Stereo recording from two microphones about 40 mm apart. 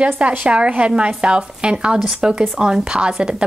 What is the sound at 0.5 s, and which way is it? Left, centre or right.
A woman's voice, right.